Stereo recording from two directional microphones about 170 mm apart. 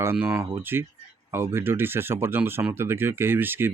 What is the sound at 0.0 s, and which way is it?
Speech, 15° right (ahead or behind).